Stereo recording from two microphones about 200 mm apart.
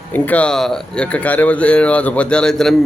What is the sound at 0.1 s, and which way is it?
A man's voice, 5° left (ahead or behind).